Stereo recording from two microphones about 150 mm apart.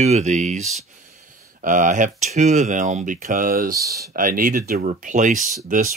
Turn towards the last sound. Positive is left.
turn(degrees=-60)  # may be behind; listen again after turning